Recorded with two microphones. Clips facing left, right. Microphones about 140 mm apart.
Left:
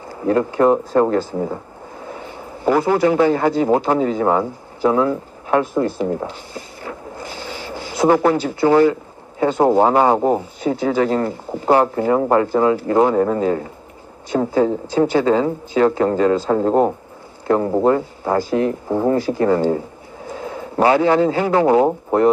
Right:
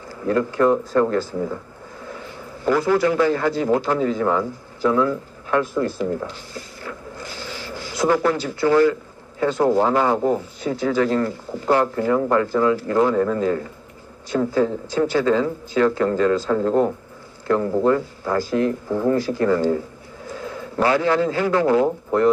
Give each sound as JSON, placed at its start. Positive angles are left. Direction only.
{"t": 0.1, "sound": "speech", "side_deg": 25}
{"t": 0.7, "sound": "speech", "side_deg": 40}
{"t": 2.7, "sound": "speech", "side_deg": 25}
{"t": 6.8, "sound": "a sound", "side_deg": 25}
{"t": 8.4, "sound": "speech", "side_deg": 25}
{"t": 16.4, "sound": "a man's voice", "side_deg": 35}